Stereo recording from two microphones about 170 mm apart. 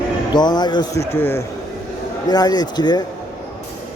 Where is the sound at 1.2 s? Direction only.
15° left (ahead or behind).